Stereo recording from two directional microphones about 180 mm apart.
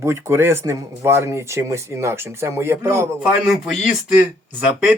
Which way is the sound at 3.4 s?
Centre (ahead or behind).